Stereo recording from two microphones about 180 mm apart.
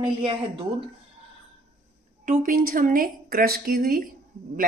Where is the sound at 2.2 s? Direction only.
45° right (ahead or behind).